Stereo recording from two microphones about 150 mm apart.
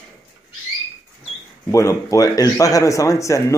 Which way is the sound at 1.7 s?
20° left (ahead or behind).